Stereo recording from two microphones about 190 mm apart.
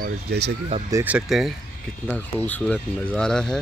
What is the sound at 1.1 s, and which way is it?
Speech, centre (ahead or behind).